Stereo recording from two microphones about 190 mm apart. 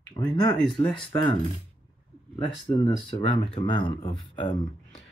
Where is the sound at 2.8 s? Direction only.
25° left (ahead or behind).